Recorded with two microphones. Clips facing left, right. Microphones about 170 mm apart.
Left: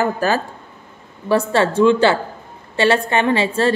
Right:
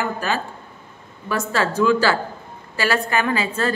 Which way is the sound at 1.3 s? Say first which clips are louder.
Left 6 dB; 30° left (ahead or behind).